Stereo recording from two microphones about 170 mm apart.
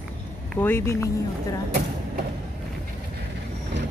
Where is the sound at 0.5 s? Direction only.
15° left (ahead or behind).